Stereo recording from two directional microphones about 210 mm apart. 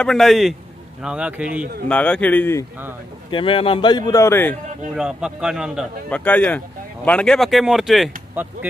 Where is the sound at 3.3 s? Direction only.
25° left (ahead or behind).